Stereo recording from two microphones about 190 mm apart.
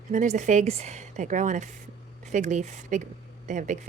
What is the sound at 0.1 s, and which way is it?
Speech, 40° right (ahead or behind).